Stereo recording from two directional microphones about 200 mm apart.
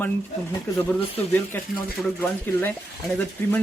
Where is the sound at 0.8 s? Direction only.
10° left (ahead or behind).